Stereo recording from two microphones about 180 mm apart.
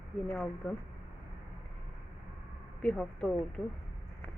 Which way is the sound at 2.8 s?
5° left (ahead or behind).